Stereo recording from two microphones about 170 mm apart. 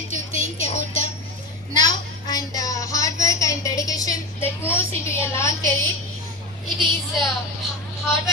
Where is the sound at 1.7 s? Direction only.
25° left (ahead or behind).